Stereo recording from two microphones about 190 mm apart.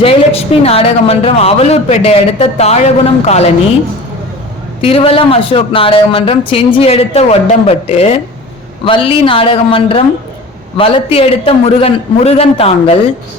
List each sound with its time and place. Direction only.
0.0 s speech: 30° left (ahead or behind)
4.8 s a man's voice: 30° left (ahead or behind)